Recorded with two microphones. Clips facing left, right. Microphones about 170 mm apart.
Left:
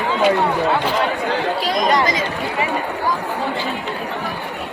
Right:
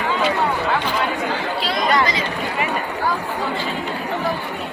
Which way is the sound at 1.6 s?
45° left (ahead or behind).